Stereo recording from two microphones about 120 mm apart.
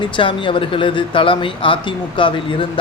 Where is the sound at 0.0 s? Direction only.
45° left (ahead or behind).